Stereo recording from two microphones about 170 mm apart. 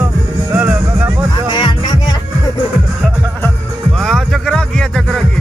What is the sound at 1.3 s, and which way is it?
Music, 30° left (ahead or behind).